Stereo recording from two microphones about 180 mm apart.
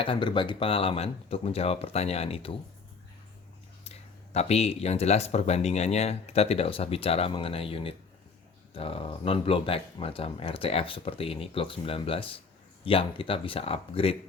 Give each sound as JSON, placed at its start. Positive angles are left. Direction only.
{"t": 0.0, "sound": "speech", "side_deg": 30}
{"t": 3.8, "sound": "speech", "side_deg": 35}